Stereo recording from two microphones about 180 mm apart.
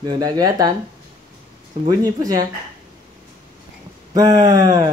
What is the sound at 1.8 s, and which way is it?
Speech, 20° right (ahead or behind).